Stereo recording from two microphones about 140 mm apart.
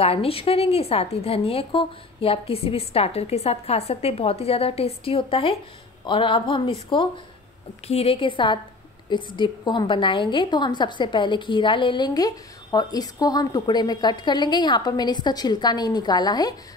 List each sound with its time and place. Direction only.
0.0 s a woman's voice: 45° left (ahead or behind)